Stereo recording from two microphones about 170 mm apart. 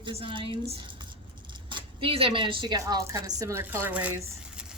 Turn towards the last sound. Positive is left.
turn(degrees=-10)  # may be behind; listen again after turning